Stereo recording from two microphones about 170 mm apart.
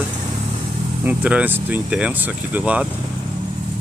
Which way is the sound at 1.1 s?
10° right (ahead or behind).